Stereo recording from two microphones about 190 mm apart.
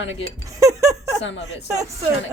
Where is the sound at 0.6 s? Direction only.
15° right (ahead or behind).